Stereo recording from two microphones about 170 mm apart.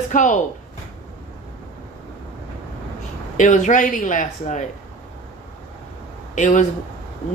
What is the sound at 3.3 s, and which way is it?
Speech, 45° left (ahead or behind).